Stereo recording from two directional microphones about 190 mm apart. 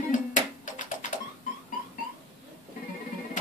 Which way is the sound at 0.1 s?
45° left (ahead or behind).